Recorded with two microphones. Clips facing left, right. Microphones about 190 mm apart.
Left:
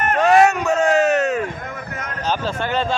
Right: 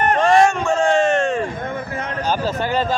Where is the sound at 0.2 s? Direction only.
5° left (ahead or behind).